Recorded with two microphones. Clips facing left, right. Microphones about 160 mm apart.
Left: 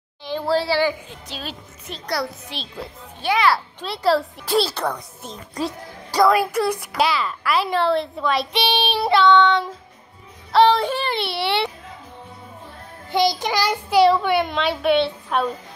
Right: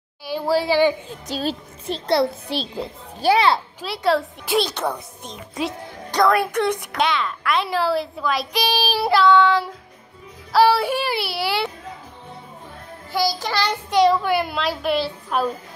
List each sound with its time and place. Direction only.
0.2 s a woman's voice: 10° right (ahead or behind)
1.2 s a woman's voice: 35° right (ahead or behind)
3.8 s a child's voice: centre (ahead or behind)
13.1 s a child's voice: 20° left (ahead or behind); by 15.5 s centre (ahead or behind)